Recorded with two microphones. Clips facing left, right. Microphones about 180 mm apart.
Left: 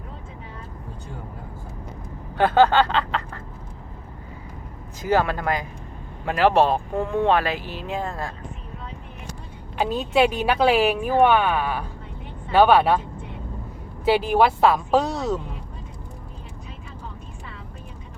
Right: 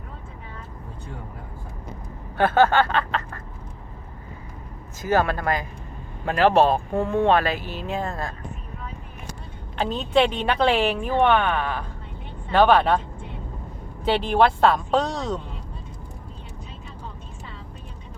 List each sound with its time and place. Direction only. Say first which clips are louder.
2.3 s speech: left 1 dB; 15° left (ahead or behind)
5.0 s speech: even; 15° left (ahead or behind)
9.7 s speech: even; 5° left (ahead or behind)
14.0 s speech: left 1 dB; 5° left (ahead or behind)